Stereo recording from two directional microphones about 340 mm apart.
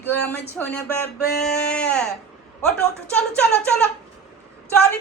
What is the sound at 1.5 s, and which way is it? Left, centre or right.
Speech, centre.